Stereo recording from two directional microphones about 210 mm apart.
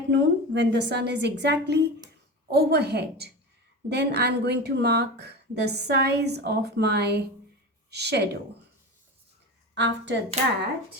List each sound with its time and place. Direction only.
0.1 s a woman's voice: 55° right (ahead or behind)
9.7 s a woman's voice: 55° right (ahead or behind)
10.4 s speech: 35° right (ahead or behind)